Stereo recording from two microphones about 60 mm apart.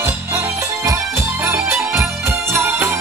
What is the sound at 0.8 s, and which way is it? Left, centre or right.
Music, right.